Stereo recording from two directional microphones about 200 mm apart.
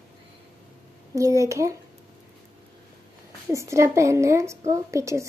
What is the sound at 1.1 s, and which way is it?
Speech, 15° right (ahead or behind).